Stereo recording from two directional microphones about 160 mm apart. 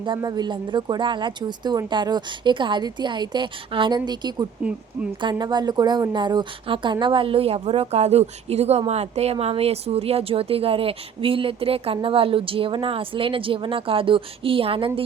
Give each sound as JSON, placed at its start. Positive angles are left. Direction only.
{"t": 0.0, "sound": "a woman's voice", "side_deg": -25}